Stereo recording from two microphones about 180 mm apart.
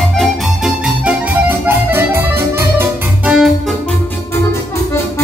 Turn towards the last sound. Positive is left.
turn(degrees=-5)  # may be behind; listen again after turning